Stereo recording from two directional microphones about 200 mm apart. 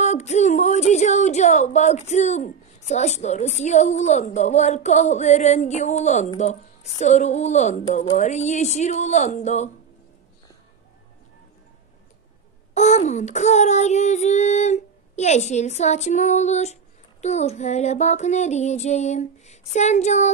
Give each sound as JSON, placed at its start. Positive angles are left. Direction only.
{"t": 0.0, "sound": "a woman's voice", "side_deg": 35}
{"t": 8.2, "sound": "child singing", "side_deg": 35}
{"t": 12.7, "sound": "child singing", "side_deg": 35}